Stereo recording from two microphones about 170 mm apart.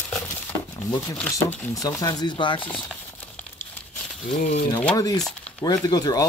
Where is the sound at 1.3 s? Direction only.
20° left (ahead or behind).